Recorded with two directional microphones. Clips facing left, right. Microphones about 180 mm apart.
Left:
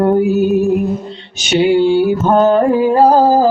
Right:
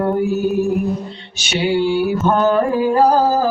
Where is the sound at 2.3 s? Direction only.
25° left (ahead or behind).